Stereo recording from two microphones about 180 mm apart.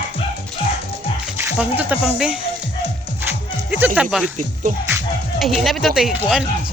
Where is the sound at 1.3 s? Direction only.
10° right (ahead or behind).